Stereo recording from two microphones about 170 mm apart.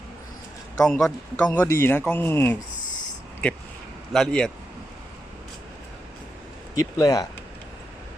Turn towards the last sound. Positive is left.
turn(degrees=20)  # may be behind; listen again after turning